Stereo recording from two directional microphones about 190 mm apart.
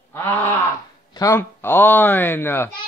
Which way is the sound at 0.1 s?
10° left (ahead or behind).